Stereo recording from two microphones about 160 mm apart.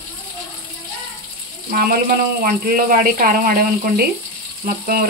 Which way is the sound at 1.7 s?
70° right (ahead or behind).